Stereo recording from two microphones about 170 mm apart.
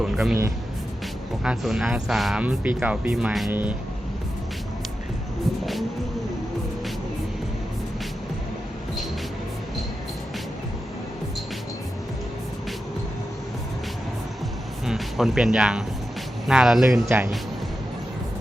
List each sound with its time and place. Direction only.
0.0 s speech: 5° right (ahead or behind)
1.5 s speech: centre (ahead or behind)
14.8 s speech: centre (ahead or behind)
17.1 s speech: 15° right (ahead or behind)